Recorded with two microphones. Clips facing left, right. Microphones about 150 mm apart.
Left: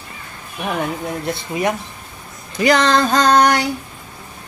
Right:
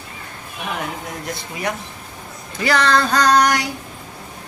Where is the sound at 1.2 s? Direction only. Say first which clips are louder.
Left 5 dB; 25° left (ahead or behind).